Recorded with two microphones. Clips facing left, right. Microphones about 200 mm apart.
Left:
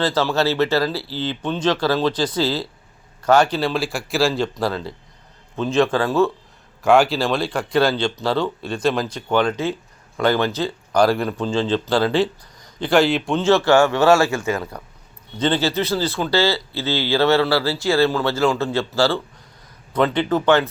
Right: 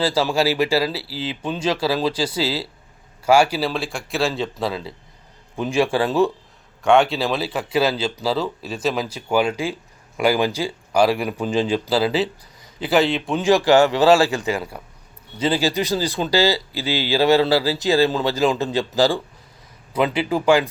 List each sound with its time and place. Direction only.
0.0 s speech: 10° right (ahead or behind)
5.5 s speech: 10° right (ahead or behind)
6.8 s speech: centre (ahead or behind)
13.4 s speech: 15° right (ahead or behind)